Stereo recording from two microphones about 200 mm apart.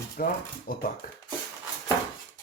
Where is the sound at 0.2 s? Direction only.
45° left (ahead or behind).